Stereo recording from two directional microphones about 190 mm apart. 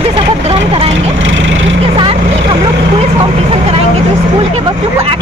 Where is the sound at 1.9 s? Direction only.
30° right (ahead or behind).